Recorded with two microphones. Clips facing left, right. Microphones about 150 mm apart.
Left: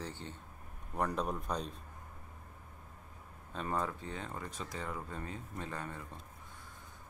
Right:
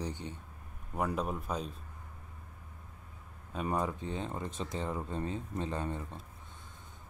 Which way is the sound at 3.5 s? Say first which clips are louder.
Right 3 dB; 15° right (ahead or behind).